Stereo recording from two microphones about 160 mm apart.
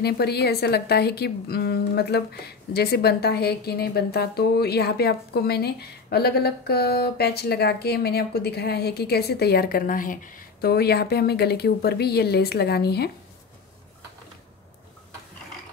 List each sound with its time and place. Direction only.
0.0 s a woman's voice: 90° left